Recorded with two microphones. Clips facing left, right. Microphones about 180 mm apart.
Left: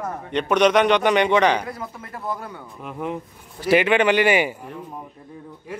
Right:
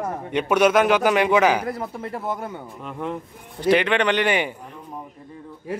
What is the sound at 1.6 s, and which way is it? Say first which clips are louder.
Speech: right 5 dB; 30° right (ahead or behind).